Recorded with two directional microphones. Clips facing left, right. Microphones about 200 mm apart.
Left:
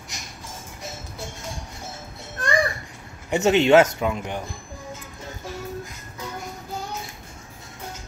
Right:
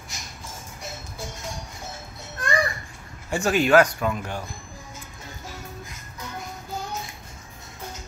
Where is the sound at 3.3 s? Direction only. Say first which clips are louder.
Left 3 dB; 25° left (ahead or behind).